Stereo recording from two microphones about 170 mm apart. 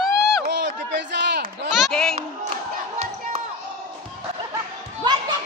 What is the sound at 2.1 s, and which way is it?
Battle cry, 40° right (ahead or behind).